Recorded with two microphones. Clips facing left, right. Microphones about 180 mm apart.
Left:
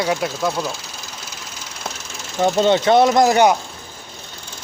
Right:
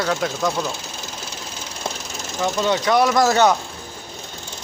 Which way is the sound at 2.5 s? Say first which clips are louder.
Left 4 dB; 25° left (ahead or behind).